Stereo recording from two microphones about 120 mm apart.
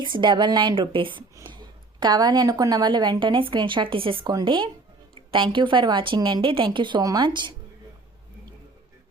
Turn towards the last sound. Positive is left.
turn(degrees=-40)  # may be behind; listen again after turning